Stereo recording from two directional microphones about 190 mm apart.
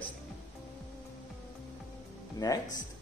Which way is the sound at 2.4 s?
20° left (ahead or behind).